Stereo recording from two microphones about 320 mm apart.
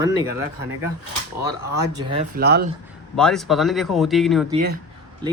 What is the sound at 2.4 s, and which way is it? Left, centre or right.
Speech, right.